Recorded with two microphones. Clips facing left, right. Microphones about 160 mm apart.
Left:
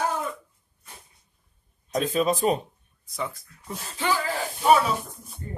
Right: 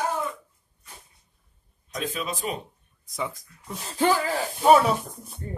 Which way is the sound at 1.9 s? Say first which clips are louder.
Left 8 dB; 40° left (ahead or behind).